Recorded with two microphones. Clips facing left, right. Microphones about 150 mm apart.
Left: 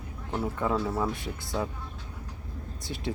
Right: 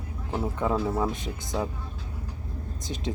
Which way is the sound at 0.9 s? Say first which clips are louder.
Right 2 dB; 20° right (ahead or behind).